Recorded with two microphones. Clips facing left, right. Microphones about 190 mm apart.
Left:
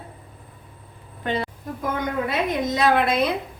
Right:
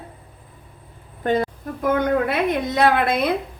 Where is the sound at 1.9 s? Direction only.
60° right (ahead or behind).